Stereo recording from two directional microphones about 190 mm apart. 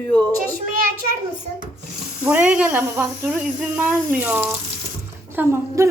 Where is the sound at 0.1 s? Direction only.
10° left (ahead or behind).